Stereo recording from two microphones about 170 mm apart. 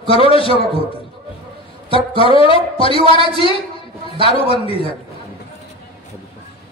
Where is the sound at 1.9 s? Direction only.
30° left (ahead or behind).